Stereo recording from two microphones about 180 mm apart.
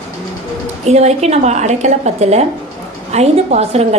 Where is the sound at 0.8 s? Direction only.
35° right (ahead or behind).